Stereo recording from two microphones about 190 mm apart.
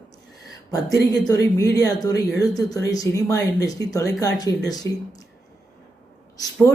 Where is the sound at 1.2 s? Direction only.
20° left (ahead or behind).